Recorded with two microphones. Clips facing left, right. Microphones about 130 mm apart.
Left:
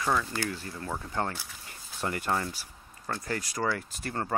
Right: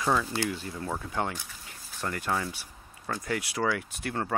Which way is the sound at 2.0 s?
5° left (ahead or behind).